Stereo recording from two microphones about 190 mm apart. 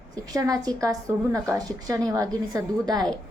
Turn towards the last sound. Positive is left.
turn(degrees=-20)  # may be behind; listen again after turning